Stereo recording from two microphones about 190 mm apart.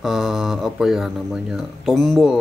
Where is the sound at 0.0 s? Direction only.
Centre (ahead or behind).